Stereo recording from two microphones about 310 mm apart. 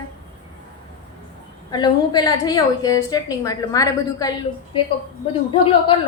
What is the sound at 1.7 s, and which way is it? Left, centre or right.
A woman's voice, centre.